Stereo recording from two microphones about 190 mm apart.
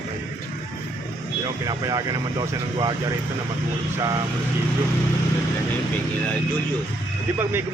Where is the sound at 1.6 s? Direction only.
20° right (ahead or behind).